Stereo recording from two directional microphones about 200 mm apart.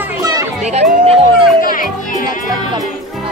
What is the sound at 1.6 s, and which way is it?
Music, 45° left (ahead or behind).